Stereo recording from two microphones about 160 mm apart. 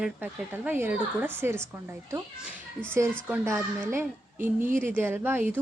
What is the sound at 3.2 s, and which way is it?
Speech, 15° right (ahead or behind).